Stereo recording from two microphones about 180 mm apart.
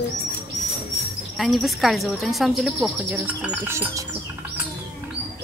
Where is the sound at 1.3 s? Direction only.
Centre (ahead or behind).